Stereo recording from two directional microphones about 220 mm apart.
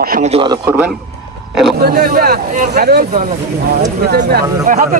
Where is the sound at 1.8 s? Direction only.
45° right (ahead or behind).